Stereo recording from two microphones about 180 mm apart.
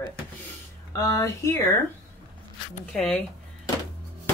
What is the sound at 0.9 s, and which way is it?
Speech, 15° left (ahead or behind).